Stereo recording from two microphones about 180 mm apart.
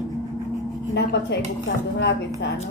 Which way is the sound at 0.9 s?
65° left (ahead or behind).